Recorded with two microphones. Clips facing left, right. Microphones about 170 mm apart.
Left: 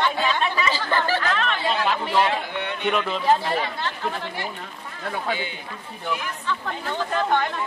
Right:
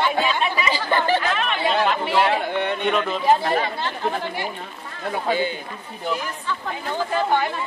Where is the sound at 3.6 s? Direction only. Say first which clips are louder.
Right 3 dB; 15° right (ahead or behind).